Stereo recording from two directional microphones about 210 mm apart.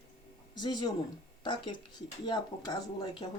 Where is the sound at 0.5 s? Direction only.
20° left (ahead or behind).